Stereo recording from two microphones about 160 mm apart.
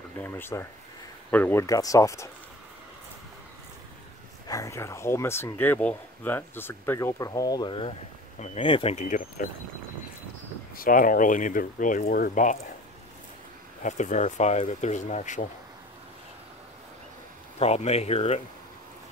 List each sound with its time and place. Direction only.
0.2 s speech: 15° left (ahead or behind)
4.5 s speech: 20° left (ahead or behind); by 9.0 s 35° left (ahead or behind)
9.0 s speech: 55° left (ahead or behind)
10.8 s speech: 60° left (ahead or behind)
13.8 s speech: 50° left (ahead or behind)
17.6 s speech: 40° left (ahead or behind)